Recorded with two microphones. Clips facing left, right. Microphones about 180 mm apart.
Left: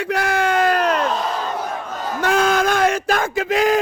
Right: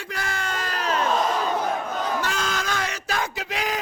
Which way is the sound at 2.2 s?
55° left (ahead or behind).